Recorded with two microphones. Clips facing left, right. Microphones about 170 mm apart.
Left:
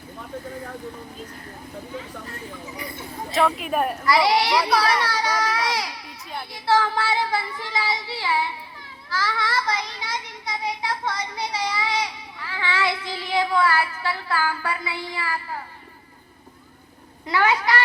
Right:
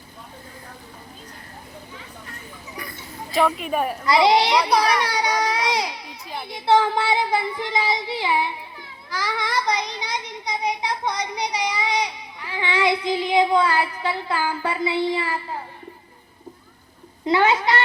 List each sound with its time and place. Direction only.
3.3 s a woman's voice: centre (ahead or behind)
4.0 s a child's voice: 20° right (ahead or behind)
17.2 s a child's voice: 20° right (ahead or behind)